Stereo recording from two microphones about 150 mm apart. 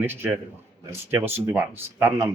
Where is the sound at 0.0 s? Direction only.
15° right (ahead or behind).